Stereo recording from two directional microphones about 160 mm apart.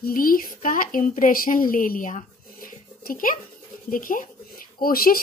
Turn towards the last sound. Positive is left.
turn(degrees=65)  # may be behind; listen again after turning